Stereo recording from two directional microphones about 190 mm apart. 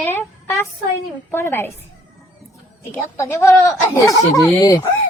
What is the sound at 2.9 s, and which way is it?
Speech, 15° left (ahead or behind).